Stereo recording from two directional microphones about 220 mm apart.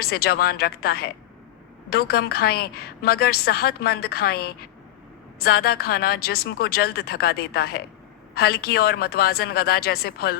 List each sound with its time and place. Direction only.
0.0 s a woman's voice: 45° left (ahead or behind)